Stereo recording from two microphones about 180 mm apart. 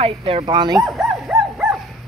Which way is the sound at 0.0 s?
35° right (ahead or behind).